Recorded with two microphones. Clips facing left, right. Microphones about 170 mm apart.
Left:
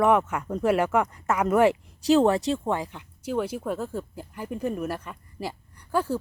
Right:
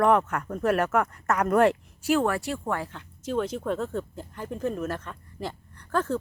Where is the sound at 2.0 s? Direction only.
25° left (ahead or behind).